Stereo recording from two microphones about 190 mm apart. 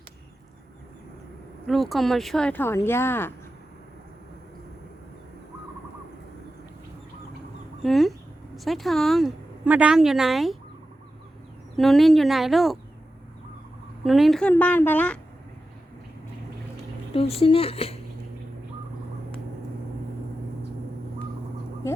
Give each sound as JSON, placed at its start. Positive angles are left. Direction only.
{"t": 1.6, "sound": "speech", "side_deg": 0}
{"t": 7.8, "sound": "a sound", "side_deg": 0}
{"t": 8.5, "sound": "a woman's voice", "side_deg": 0}
{"t": 11.8, "sound": "a woman's voice", "side_deg": 0}
{"t": 14.0, "sound": "speech", "side_deg": 0}
{"t": 17.2, "sound": "speech", "side_deg": 30}